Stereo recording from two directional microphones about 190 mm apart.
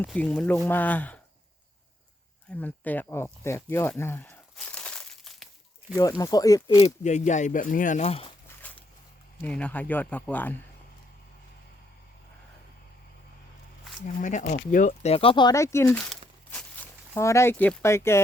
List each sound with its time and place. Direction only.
0.0 s speech: 5° left (ahead or behind)
2.5 s speech: 10° left (ahead or behind)
4.5 s crumpling: 5° left (ahead or behind)
6.0 s speech: 20° left (ahead or behind)
6.8 s speech: 40° left (ahead or behind)
8.4 s a sound: 10° left (ahead or behind)
9.4 s speech: 5° left (ahead or behind)
14.2 s speech: 40° left (ahead or behind); by 16.1 s 5° left (ahead or behind)
16.5 s a sound: 10° left (ahead or behind)